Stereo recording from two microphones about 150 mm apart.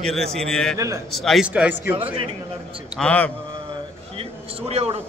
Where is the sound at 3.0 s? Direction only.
10° left (ahead or behind).